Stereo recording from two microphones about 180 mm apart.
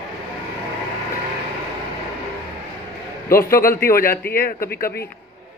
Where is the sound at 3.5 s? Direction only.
55° left (ahead or behind).